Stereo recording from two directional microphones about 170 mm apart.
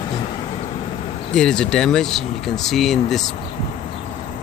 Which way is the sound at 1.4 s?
5° left (ahead or behind).